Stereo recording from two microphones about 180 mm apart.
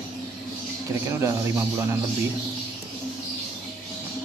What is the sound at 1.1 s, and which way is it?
Speech, 15° right (ahead or behind).